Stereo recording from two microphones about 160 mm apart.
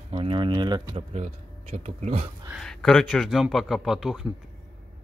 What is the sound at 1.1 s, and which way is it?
Speech, 45° right (ahead or behind).